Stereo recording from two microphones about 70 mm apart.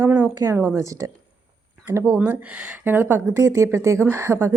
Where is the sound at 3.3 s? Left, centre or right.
Right.